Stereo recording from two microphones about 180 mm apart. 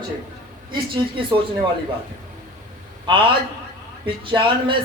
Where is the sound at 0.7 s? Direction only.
25° right (ahead or behind).